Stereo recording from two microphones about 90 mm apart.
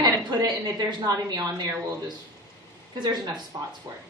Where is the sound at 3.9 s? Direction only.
45° right (ahead or behind).